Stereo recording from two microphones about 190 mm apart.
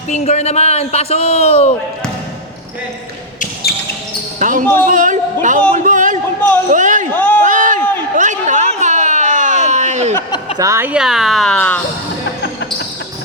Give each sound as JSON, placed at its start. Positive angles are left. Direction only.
{"t": 0.1, "sound": "a man's voice", "side_deg": 35}
{"t": 3.4, "sound": "basketball bounce", "side_deg": 55}
{"t": 4.4, "sound": "speech", "side_deg": -45}
{"t": 4.6, "sound": "speech", "side_deg": 10}
{"t": 4.9, "sound": "a man's voice", "side_deg": -45}
{"t": 5.7, "sound": "a sound", "side_deg": -45}
{"t": 6.7, "sound": "speech", "side_deg": -40}
{"t": 7.1, "sound": "speech", "side_deg": 10}
{"t": 7.4, "sound": "a sound", "side_deg": -45}
{"t": 10.6, "sound": "speech", "side_deg": -15}